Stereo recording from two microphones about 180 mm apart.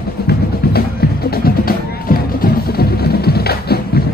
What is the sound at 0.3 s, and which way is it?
Music, 60° left (ahead or behind).